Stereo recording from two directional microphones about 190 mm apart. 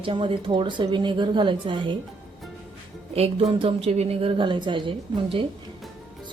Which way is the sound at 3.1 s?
30° right (ahead or behind).